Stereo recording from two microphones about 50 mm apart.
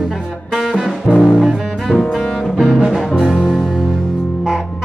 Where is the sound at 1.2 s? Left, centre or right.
Centre.